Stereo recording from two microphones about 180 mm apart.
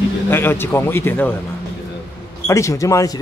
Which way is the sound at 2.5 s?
15° left (ahead or behind).